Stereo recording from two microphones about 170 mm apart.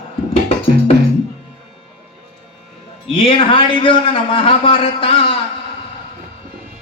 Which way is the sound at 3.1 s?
30° left (ahead or behind).